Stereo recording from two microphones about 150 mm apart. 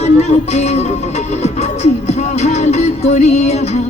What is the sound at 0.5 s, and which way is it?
Music, 45° left (ahead or behind).